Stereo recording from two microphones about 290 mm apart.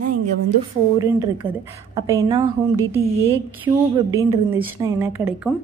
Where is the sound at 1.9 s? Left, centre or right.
Centre.